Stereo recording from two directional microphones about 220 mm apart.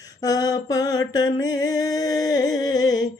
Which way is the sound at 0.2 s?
15° left (ahead or behind).